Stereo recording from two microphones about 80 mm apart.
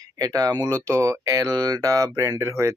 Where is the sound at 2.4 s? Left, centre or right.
Right.